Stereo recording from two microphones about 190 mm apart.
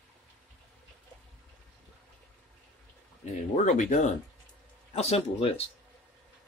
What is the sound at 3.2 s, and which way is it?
Speech, 40° left (ahead or behind).